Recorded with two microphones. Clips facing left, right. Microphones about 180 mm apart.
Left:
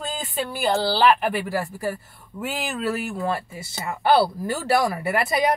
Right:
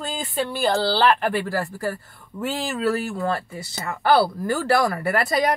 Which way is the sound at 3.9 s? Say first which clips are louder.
Even; 15° left (ahead or behind).